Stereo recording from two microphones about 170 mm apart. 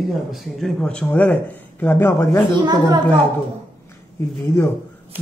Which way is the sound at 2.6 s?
25° right (ahead or behind).